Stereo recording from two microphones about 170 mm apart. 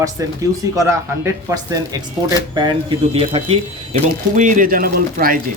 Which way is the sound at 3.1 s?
35° right (ahead or behind).